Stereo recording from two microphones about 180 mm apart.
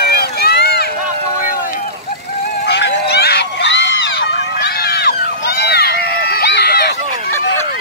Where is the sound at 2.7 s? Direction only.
70° left (ahead or behind).